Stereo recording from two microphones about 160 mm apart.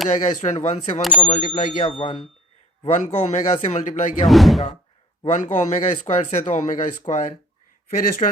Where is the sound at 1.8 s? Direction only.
35° left (ahead or behind).